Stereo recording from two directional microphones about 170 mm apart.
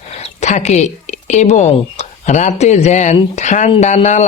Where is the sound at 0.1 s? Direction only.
40° left (ahead or behind).